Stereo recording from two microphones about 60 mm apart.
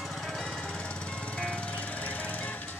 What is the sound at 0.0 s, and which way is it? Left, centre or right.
Jackhammer, centre.